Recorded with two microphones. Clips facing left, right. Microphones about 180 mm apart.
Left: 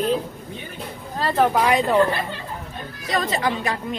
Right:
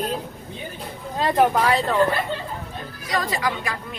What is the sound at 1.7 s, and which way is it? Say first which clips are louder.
Speech: left 2 dB; 15° left (ahead or behind).